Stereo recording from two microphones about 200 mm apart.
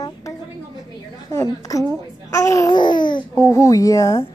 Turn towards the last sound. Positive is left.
turn(degrees=15)  # may be behind; listen again after turning